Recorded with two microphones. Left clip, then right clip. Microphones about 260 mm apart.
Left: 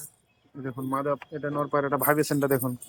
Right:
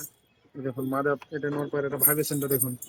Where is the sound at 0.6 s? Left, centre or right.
Centre.